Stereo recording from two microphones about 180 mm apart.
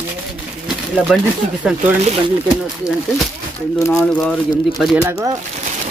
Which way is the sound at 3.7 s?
15° left (ahead or behind).